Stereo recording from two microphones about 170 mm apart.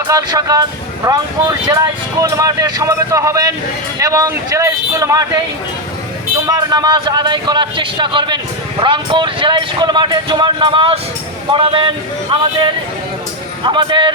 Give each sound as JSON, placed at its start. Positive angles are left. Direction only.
{"t": 0.1, "sound": "speech", "side_deg": -20}
{"t": 6.5, "sound": "speech", "side_deg": -20}